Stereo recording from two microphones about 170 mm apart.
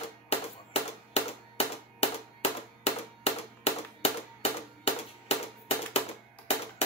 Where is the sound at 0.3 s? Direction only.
35° left (ahead or behind).